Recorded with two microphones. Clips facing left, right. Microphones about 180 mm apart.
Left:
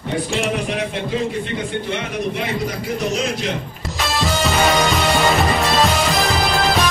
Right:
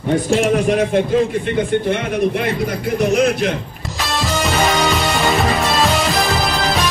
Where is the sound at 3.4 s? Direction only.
55° right (ahead or behind).